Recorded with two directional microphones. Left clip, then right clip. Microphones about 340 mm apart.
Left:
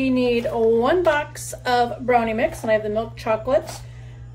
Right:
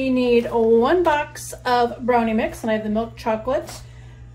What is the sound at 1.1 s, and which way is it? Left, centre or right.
A woman's voice, centre.